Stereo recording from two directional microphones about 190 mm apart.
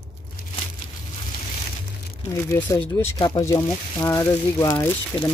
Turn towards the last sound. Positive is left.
turn(degrees=15)  # may be behind; listen again after turning